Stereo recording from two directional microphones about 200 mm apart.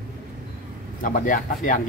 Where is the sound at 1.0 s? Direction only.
40° left (ahead or behind).